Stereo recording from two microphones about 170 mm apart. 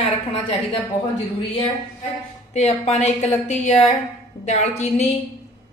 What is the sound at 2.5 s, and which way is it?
A woman's voice, 40° left (ahead or behind).